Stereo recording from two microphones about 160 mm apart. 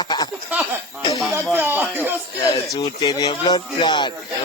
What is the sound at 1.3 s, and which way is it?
Speech, 15° right (ahead or behind).